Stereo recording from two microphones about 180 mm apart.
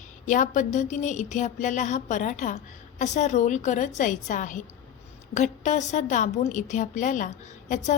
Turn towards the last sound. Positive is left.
turn(degrees=45)  # may be behind; listen again after turning